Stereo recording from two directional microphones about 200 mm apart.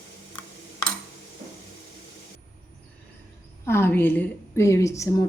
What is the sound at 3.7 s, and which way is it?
A woman's voice, 10° left (ahead or behind).